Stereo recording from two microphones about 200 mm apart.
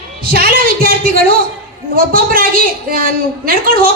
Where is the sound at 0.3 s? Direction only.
50° right (ahead or behind).